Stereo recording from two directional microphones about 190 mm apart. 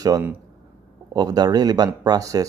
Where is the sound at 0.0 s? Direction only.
15° right (ahead or behind).